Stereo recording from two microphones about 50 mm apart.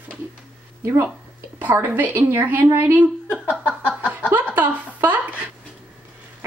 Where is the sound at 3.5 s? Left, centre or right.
Left.